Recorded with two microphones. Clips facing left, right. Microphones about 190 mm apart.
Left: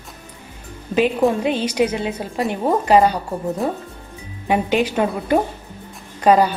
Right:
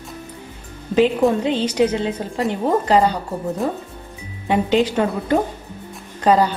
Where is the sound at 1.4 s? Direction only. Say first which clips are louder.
Right 1 dB; 10° left (ahead or behind).